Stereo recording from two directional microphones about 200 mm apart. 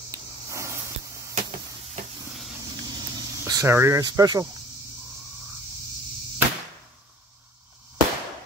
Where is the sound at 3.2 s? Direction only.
20° right (ahead or behind).